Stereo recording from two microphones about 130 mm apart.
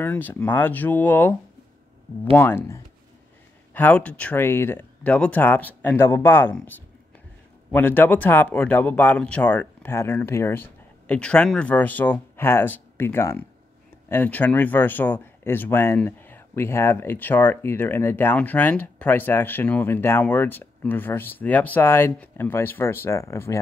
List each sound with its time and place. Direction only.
0.0 s speech: 15° left (ahead or behind)
2.3 s speech: 15° left (ahead or behind)
7.7 s speech: 15° left (ahead or behind)